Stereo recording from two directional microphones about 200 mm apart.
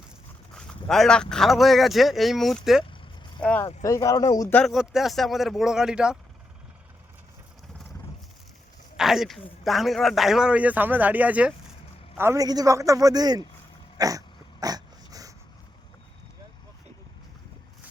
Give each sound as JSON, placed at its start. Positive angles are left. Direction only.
{"t": 0.5, "sound": "a man's voice", "side_deg": 5}
{"t": 9.0, "sound": "a man's voice", "side_deg": 0}
{"t": 14.0, "sound": "dog", "side_deg": -15}